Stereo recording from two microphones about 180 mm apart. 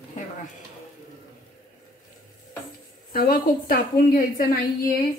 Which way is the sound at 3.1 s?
55° left (ahead or behind).